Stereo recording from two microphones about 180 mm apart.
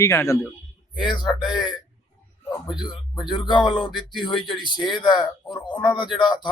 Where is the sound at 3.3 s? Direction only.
25° left (ahead or behind).